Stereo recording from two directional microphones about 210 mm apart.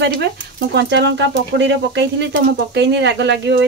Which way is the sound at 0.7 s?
55° right (ahead or behind).